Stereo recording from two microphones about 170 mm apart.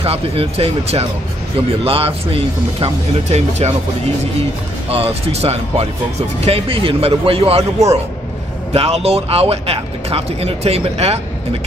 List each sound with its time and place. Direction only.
0.0 s speech: 35° right (ahead or behind)
8.7 s speech: 35° right (ahead or behind)